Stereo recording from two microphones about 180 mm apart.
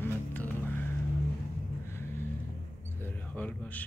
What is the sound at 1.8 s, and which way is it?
Vehicle, 15° left (ahead or behind).